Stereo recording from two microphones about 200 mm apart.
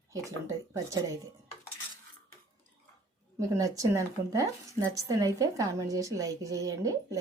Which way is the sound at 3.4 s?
15° right (ahead or behind).